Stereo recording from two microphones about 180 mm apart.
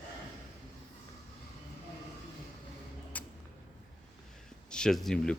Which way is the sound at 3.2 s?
10° left (ahead or behind).